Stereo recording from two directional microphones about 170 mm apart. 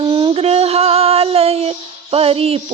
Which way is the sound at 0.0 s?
30° right (ahead or behind).